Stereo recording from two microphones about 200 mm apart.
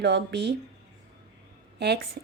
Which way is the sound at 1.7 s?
55° right (ahead or behind).